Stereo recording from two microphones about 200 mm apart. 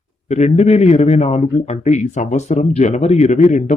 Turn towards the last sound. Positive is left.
turn(degrees=35)  # may be behind; listen again after turning